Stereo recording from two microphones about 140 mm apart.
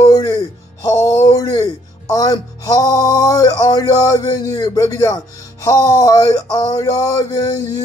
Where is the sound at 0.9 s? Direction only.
20° left (ahead or behind).